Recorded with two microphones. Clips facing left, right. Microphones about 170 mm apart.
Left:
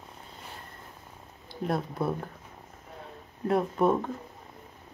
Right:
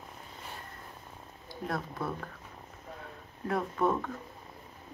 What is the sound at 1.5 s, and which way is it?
Speech, 25° left (ahead or behind).